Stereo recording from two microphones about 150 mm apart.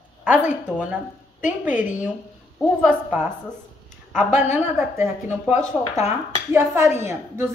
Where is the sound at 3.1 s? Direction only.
10° right (ahead or behind).